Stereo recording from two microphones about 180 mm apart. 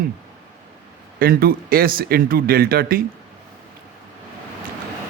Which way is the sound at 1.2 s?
55° right (ahead or behind).